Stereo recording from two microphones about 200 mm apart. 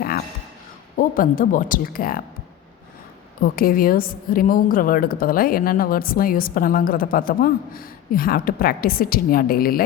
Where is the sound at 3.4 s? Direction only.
45° left (ahead or behind).